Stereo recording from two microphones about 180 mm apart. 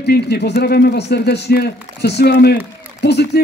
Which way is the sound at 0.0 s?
65° left (ahead or behind).